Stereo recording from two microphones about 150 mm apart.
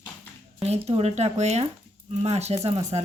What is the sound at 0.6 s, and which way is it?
Speech, 45° right (ahead or behind).